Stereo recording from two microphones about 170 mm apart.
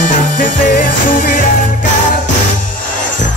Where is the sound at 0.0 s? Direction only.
50° left (ahead or behind).